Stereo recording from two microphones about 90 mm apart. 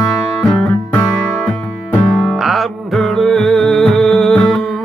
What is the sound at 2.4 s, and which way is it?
Music, centre (ahead or behind).